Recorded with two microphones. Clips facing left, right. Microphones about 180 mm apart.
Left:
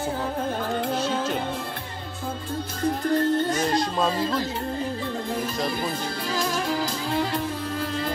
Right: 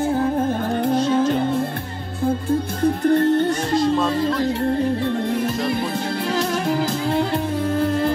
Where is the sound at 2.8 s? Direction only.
60° right (ahead or behind).